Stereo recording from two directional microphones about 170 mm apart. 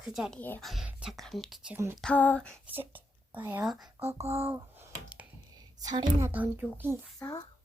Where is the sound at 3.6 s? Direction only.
Centre (ahead or behind).